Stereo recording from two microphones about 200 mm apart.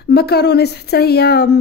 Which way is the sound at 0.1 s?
55° left (ahead or behind).